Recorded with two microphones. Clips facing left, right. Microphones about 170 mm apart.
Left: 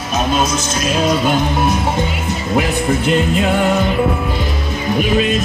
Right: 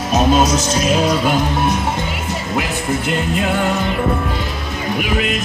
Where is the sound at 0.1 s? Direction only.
40° right (ahead or behind).